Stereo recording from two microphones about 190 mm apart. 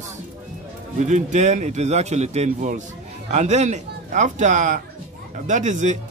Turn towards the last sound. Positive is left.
turn(degrees=-40)  # may be behind; listen again after turning